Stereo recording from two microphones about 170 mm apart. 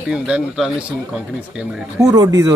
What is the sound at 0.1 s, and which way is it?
A man's voice, 5° right (ahead or behind).